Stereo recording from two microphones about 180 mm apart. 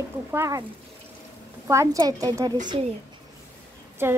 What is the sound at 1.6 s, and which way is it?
Speech, 15° right (ahead or behind).